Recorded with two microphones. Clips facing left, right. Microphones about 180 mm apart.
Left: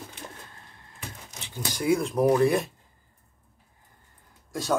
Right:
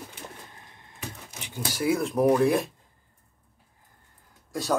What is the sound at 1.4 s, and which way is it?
Speech, 10° right (ahead or behind).